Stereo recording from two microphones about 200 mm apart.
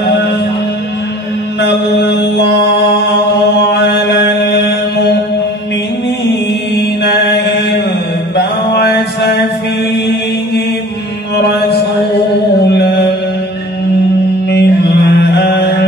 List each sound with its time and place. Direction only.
1.6 s mantra: 60° left (ahead or behind)
3.7 s mantra: 55° left (ahead or behind)
7.0 s music: 60° left (ahead or behind)
8.4 s a sound: 55° left (ahead or behind)
14.5 s mantra: 55° left (ahead or behind)